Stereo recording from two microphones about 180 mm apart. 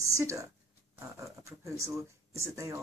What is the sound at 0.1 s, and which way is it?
A woman's voice, 15° right (ahead or behind).